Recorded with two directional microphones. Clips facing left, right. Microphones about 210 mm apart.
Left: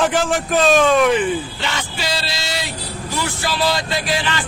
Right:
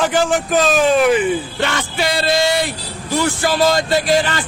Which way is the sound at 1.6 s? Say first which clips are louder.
Right 6 dB; 55° right (ahead or behind).